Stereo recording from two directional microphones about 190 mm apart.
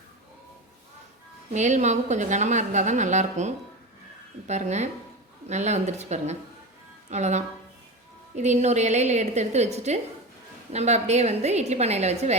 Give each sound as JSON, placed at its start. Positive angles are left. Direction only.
{"t": 1.5, "sound": "a woman's voice", "side_deg": -40}